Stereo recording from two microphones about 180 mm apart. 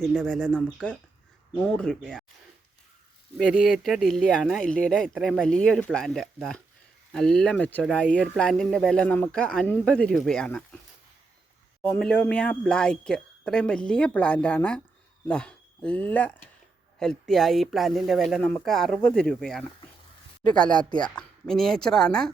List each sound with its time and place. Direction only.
0.0 s speech: 5° left (ahead or behind)
3.3 s speech: centre (ahead or behind)
11.8 s speech: 5° left (ahead or behind)
20.7 s speech: 25° left (ahead or behind)
21.2 s speech: 5° left (ahead or behind)